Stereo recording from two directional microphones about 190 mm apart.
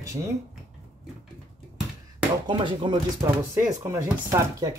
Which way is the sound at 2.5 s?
25° right (ahead or behind).